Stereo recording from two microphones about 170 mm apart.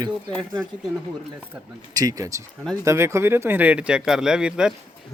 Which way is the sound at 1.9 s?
20° right (ahead or behind).